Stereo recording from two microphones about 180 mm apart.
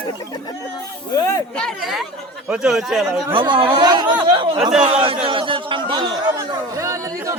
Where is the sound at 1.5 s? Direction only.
Centre (ahead or behind).